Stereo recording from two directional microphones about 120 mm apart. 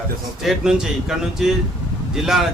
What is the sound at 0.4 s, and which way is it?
A man's voice, 5° right (ahead or behind).